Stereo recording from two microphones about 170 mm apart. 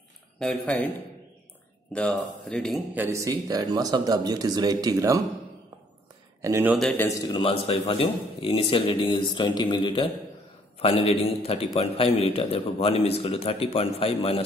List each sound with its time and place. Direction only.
0.4 s speech: 5° left (ahead or behind)
1.9 s speech: 5° left (ahead or behind)
2.9 s speech: 15° right (ahead or behind)
6.4 s speech: 15° right (ahead or behind)
6.7 s speech: 5° left (ahead or behind)
7.1 s a man's voice: 20° left (ahead or behind)